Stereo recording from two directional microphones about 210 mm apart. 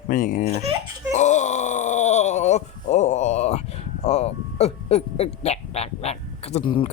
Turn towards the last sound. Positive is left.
turn(degrees=25)  # may be behind; listen again after turning